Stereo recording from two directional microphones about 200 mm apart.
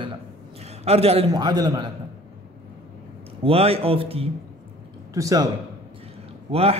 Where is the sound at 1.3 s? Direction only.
20° right (ahead or behind).